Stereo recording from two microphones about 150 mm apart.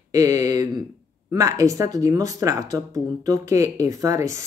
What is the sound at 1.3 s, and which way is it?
Speech, 25° right (ahead or behind).